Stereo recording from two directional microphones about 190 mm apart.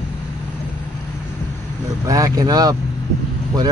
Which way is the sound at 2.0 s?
15° right (ahead or behind).